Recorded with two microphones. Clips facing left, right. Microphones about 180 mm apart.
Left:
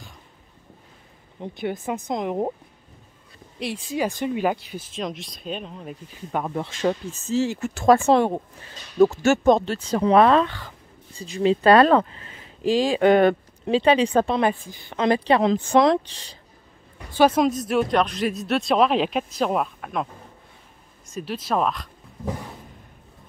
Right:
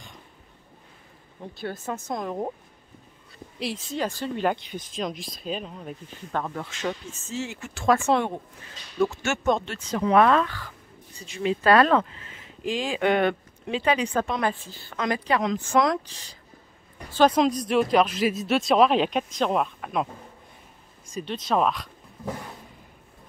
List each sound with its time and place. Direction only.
1.4 s speech: 20° left (ahead or behind)
3.9 s speech: 15° left (ahead or behind)
6.3 s speech: 15° left (ahead or behind)
6.6 s speech: 35° left (ahead or behind)
14.6 s speech: 15° left (ahead or behind)
15.0 s speech: 30° left (ahead or behind)
17.1 s speech: 5° left (ahead or behind)
21.1 s speech: 5° left (ahead or behind)